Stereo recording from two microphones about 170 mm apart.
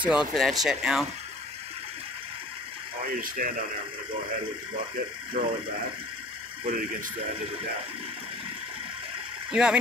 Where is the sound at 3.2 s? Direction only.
55° right (ahead or behind).